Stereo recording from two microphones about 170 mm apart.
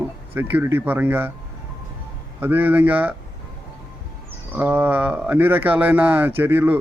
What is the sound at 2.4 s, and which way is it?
Speech, 10° right (ahead or behind).